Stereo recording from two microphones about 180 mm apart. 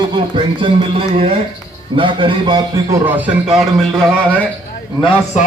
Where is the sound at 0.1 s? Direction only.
30° right (ahead or behind).